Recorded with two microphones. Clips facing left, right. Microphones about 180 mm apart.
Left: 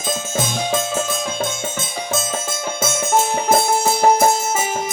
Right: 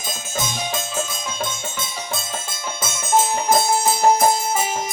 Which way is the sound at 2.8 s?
55° left (ahead or behind).